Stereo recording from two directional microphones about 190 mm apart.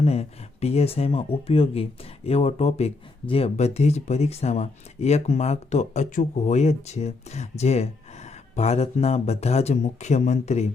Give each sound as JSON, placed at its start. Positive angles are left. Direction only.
{"t": 0.0, "sound": "speech", "side_deg": 35}